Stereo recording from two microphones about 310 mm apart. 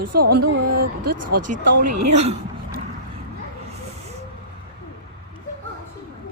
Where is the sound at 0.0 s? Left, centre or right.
Right.